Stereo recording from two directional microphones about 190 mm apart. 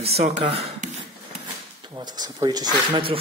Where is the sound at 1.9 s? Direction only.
20° right (ahead or behind).